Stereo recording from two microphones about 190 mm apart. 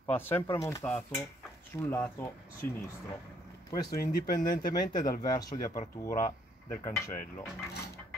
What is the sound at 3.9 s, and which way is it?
Speech, 55° left (ahead or behind).